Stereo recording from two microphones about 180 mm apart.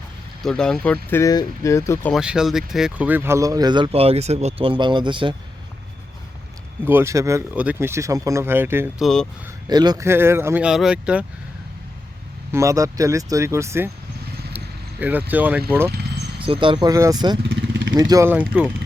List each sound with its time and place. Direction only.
0.4 s speech: 5° left (ahead or behind)
1.1 s speech: 20° left (ahead or behind)
2.1 s speech: 5° right (ahead or behind); by 5.3 s 25° right (ahead or behind)
6.8 s speech: 15° right (ahead or behind)
9.0 s speech: centre (ahead or behind)
9.6 s speech: 25° right (ahead or behind); by 11.3 s 5° right (ahead or behind)
12.5 s speech: 15° right (ahead or behind)
14.5 s vehicle: 10° right (ahead or behind)
15.3 s speech: 10° right (ahead or behind)
16.4 s speech: 30° right (ahead or behind)
17.5 s vehicle: 80° right
17.9 s speech: 20° right (ahead or behind)